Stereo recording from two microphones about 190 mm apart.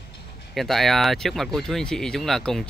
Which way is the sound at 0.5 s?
Centre (ahead or behind).